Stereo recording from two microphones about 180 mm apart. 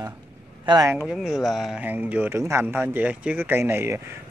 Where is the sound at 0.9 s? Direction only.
10° right (ahead or behind).